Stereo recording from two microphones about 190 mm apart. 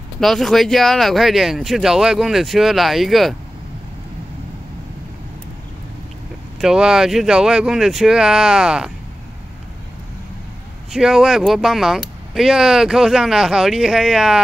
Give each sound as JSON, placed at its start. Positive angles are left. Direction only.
{"t": 0.2, "sound": "speech", "side_deg": 0}
{"t": 6.6, "sound": "speech", "side_deg": -5}
{"t": 10.9, "sound": "speech", "side_deg": 0}